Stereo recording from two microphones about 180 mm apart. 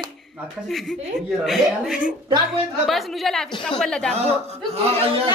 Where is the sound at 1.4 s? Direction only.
Centre (ahead or behind).